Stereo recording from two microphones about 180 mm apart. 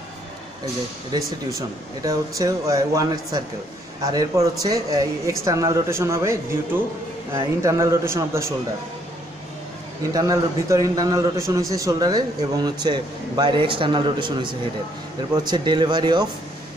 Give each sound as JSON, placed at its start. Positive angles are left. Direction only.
{"t": 1.1, "sound": "a man's voice", "side_deg": -20}
{"t": 10.1, "sound": "a man's voice", "side_deg": -20}